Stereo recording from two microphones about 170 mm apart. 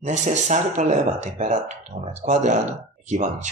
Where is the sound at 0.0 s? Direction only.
45° right (ahead or behind).